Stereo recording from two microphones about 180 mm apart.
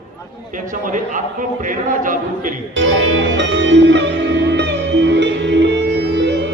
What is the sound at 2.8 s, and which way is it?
Music, 90° right.